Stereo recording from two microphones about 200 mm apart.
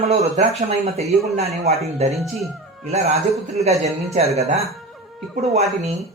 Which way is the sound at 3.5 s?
30° right (ahead or behind).